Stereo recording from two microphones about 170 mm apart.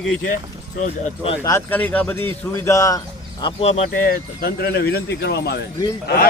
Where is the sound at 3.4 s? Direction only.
35° left (ahead or behind).